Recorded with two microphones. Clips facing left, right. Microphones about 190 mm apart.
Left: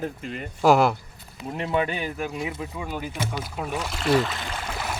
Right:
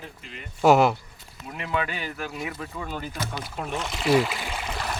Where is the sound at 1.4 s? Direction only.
30° left (ahead or behind); by 4.7 s 10° right (ahead or behind).